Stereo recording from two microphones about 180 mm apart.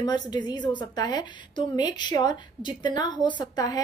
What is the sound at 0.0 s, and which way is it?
A woman's voice, 25° left (ahead or behind).